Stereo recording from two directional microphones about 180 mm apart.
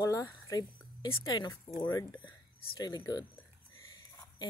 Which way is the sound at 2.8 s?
20° left (ahead or behind).